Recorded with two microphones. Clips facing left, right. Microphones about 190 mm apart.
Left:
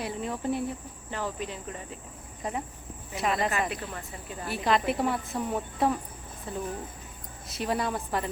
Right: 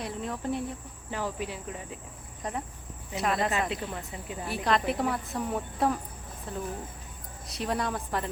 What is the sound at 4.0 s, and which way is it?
Speech, 15° right (ahead or behind).